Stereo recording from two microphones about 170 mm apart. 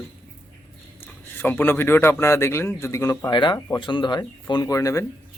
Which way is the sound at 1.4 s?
10° left (ahead or behind).